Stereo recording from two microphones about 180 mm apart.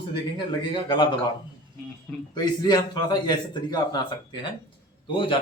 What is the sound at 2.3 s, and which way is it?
A man's voice, 25° left (ahead or behind).